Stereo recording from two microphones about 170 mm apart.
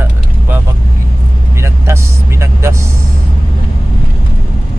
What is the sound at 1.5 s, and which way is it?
Vehicle, 15° right (ahead or behind).